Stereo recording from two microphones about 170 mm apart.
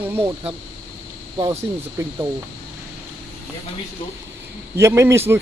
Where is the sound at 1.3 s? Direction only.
20° right (ahead or behind).